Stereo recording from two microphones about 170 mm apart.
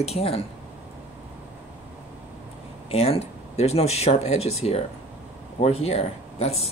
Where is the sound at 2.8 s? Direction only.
35° left (ahead or behind).